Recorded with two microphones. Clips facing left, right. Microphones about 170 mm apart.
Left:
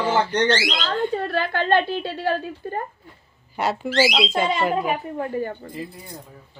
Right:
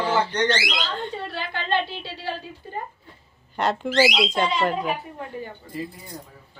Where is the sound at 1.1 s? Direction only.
50° left (ahead or behind).